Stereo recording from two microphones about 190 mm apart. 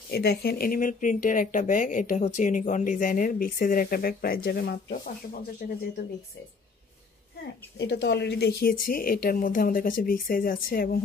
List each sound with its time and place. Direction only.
0.1 s speech: 55° left (ahead or behind)
5.6 s speech: 45° left (ahead or behind)
7.8 s speech: 65° left (ahead or behind)